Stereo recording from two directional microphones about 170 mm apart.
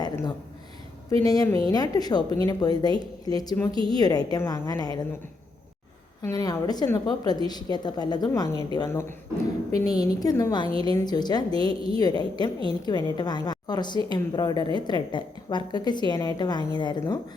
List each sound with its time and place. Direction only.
0.0 s a sound: 25° left (ahead or behind)
1.2 s a woman's voice: 20° left (ahead or behind)
6.2 s a woman's voice: 20° left (ahead or behind)